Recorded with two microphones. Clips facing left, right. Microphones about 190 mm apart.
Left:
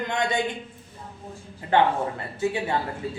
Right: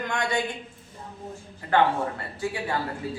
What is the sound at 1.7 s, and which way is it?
A man's voice, 20° left (ahead or behind).